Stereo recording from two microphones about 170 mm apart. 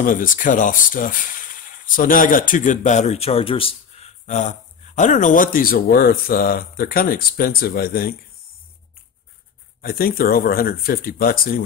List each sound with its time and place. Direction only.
0.0 s speech: 55° left (ahead or behind)
9.8 s speech: 60° left (ahead or behind)